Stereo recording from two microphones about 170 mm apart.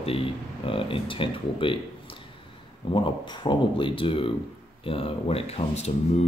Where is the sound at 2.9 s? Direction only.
30° left (ahead or behind).